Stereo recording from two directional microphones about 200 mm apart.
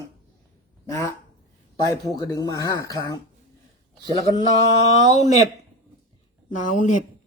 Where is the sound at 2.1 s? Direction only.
20° left (ahead or behind).